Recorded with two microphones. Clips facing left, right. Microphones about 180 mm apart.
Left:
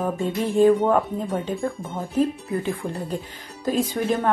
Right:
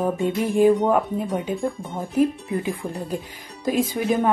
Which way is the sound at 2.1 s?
10° right (ahead or behind).